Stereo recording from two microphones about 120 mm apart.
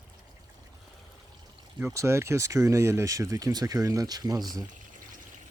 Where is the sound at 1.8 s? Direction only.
25° right (ahead or behind).